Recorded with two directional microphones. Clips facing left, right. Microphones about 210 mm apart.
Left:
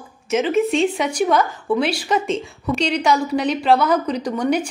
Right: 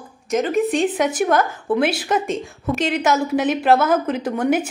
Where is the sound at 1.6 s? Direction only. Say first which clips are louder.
Right 1 dB; 20° right (ahead or behind).